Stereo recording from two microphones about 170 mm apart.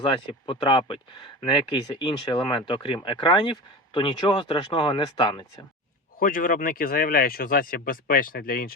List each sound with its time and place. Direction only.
0.0 s speech: 30° left (ahead or behind)
6.1 s speech: 55° left (ahead or behind)